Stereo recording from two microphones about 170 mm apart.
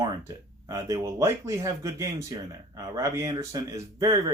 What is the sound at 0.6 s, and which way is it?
Speech, 20° right (ahead or behind).